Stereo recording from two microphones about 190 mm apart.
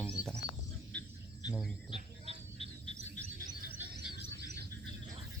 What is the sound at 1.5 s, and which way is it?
Speech, centre (ahead or behind).